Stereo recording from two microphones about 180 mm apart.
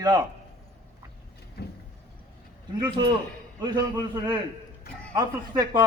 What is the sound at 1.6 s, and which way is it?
Vehicle, 60° left (ahead or behind).